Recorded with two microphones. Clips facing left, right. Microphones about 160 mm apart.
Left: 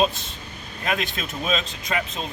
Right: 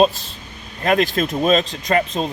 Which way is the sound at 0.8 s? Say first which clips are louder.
Right 10 dB; 50° right (ahead or behind).